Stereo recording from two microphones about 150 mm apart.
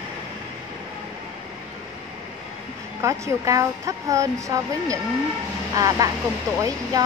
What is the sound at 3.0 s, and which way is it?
A woman's voice, 20° right (ahead or behind).